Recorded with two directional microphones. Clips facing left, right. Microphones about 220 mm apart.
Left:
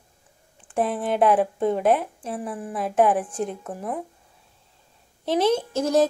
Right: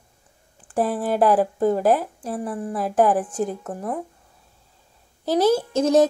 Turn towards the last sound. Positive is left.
turn(degrees=-20)  # may be behind; listen again after turning